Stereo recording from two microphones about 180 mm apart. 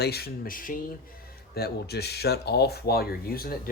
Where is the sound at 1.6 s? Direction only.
60° left (ahead or behind).